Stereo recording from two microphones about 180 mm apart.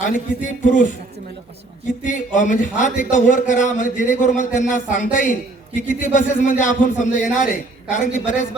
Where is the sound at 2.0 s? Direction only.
45° left (ahead or behind).